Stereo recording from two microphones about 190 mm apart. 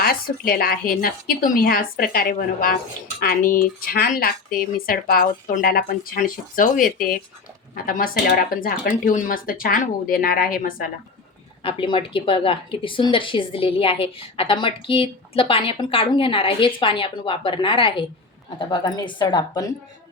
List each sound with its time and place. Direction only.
0.0 s speech: 50° left (ahead or behind)
11.6 s speech: 25° left (ahead or behind)